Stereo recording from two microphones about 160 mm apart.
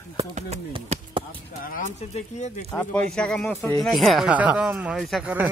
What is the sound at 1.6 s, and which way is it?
Speech, 60° left (ahead or behind).